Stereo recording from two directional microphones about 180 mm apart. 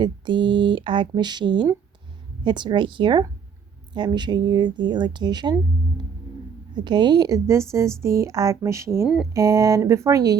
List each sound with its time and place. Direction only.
0.0 s speech: 25° right (ahead or behind)
6.8 s speech: 25° right (ahead or behind)